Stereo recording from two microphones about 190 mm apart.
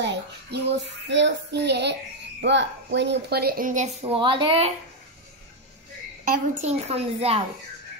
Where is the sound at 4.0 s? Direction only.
25° right (ahead or behind).